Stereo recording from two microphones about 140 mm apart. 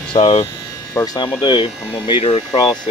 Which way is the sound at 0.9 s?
25° left (ahead or behind).